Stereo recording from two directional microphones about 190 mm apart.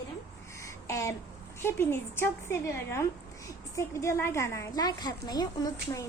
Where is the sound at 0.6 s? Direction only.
15° left (ahead or behind).